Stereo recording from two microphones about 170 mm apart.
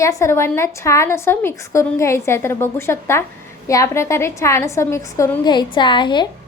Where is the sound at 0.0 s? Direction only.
15° left (ahead or behind).